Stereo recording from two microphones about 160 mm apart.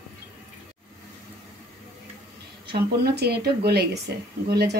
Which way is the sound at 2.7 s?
90° right.